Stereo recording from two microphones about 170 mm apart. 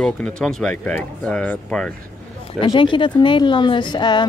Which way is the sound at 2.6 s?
30° left (ahead or behind).